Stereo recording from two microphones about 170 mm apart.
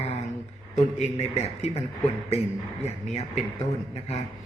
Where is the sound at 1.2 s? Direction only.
40° left (ahead or behind).